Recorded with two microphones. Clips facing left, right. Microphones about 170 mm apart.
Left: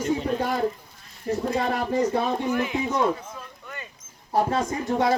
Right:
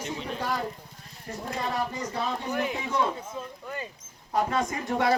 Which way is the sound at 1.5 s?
65° left (ahead or behind).